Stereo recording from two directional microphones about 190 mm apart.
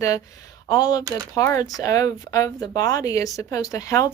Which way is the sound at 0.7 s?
20° left (ahead or behind).